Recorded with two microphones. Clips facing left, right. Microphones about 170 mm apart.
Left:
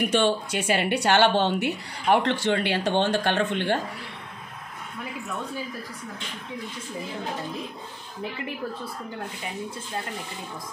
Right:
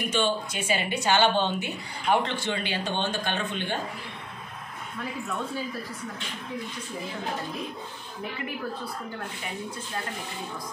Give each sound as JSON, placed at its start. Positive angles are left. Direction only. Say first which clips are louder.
{"t": 0.1, "sound": "speech", "louder": "left 4 dB", "side_deg": 70}